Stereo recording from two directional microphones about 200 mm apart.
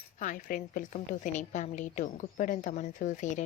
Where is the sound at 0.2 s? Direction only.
40° left (ahead or behind).